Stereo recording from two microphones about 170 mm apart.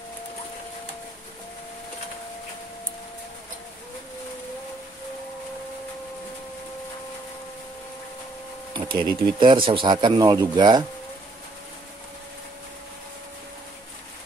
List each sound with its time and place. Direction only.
8.7 s speech: 25° right (ahead or behind)